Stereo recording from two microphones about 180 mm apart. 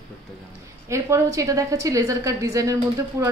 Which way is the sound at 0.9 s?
15° right (ahead or behind).